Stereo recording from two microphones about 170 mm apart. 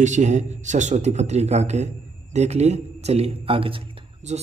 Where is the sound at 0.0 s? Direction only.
45° right (ahead or behind).